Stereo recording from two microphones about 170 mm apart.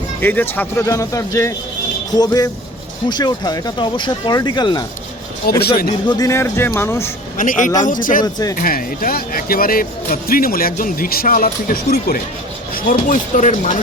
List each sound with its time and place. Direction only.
0.2 s a man's voice: 10° left (ahead or behind); by 4.9 s 25° left (ahead or behind)
5.5 s speech: 65° left (ahead or behind)
6.1 s a man's voice: 20° left (ahead or behind)
7.3 s speech: 50° left (ahead or behind)
8.2 s speech: 20° left (ahead or behind)
8.5 s speech: 55° left (ahead or behind)
12.7 s speech: 50° left (ahead or behind)